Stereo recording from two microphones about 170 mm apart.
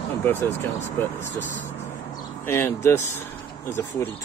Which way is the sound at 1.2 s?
50° left (ahead or behind).